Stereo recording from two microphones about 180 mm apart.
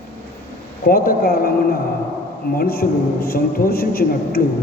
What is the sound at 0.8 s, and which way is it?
A man's voice, 55° left (ahead or behind).